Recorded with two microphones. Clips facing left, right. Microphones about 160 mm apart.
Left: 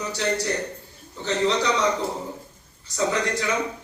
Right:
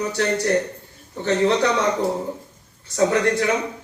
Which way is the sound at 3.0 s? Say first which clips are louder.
Right 6 dB; 50° right (ahead or behind).